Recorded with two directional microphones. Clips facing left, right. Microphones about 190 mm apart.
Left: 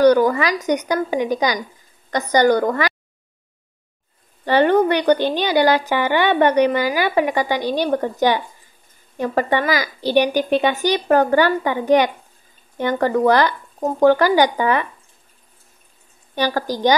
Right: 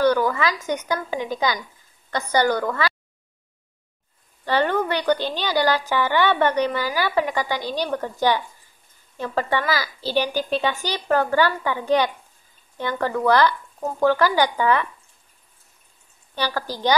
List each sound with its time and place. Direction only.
0.0 s a woman's voice: 15° left (ahead or behind)
4.5 s speech: 15° left (ahead or behind)
16.3 s speech: 15° left (ahead or behind)